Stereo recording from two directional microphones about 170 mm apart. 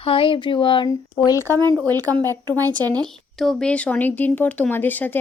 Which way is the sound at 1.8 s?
20° right (ahead or behind).